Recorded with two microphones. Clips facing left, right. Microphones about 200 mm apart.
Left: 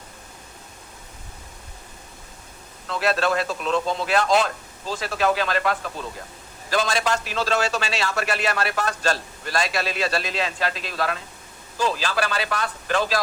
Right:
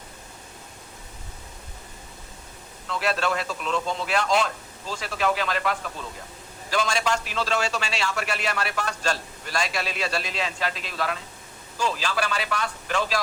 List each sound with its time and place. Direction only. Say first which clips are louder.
2.9 s a man's voice: left 3 dB; 40° left (ahead or behind)
11.8 s a man's voice: left 3 dB; 40° left (ahead or behind)